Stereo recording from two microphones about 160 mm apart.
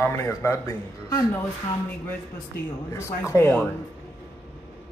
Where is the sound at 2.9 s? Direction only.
15° left (ahead or behind).